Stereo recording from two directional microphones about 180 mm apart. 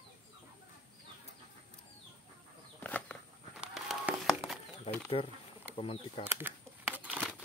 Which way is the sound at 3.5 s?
5° right (ahead or behind).